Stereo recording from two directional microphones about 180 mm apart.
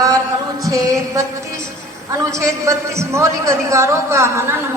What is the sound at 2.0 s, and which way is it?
A man's voice, 15° right (ahead or behind).